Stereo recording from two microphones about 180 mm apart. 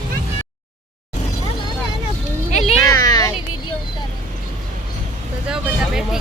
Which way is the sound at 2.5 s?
40° left (ahead or behind).